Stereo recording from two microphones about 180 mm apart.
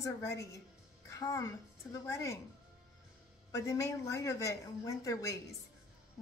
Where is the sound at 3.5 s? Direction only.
20° left (ahead or behind).